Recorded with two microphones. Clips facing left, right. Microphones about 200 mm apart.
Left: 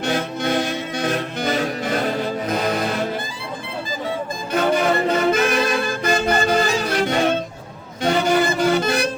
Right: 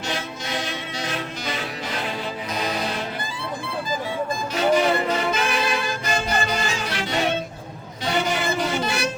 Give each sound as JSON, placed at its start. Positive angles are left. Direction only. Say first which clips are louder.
{"t": 0.0, "sound": "music", "louder": "left 8 dB", "side_deg": 60}
{"t": 4.5, "sound": "music", "louder": "left 2 dB", "side_deg": 55}
{"t": 6.6, "sound": "music", "louder": "left 8 dB", "side_deg": 40}